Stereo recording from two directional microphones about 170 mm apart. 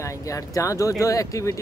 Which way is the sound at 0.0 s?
20° left (ahead or behind).